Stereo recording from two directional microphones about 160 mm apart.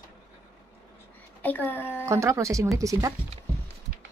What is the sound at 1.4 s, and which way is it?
Speech, 10° left (ahead or behind).